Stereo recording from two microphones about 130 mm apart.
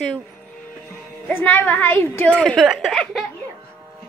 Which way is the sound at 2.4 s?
Centre (ahead or behind).